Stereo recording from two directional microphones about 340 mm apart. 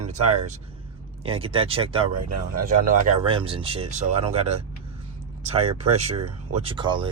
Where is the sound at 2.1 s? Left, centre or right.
Right.